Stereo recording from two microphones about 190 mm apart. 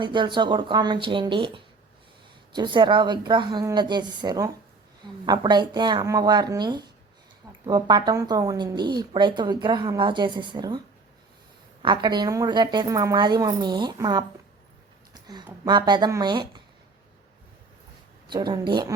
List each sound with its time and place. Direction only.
0.0 s speech: 25° right (ahead or behind)
11.8 s speech: 25° right (ahead or behind)
15.1 s a sound: 20° right (ahead or behind)
15.6 s speech: 20° right (ahead or behind)
18.3 s speech: 20° right (ahead or behind)